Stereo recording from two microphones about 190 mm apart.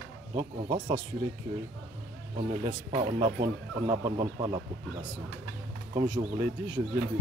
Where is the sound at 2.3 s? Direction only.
30° right (ahead or behind).